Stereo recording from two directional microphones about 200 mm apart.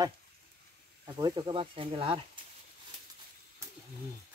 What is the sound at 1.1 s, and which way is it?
Speech, 20° right (ahead or behind).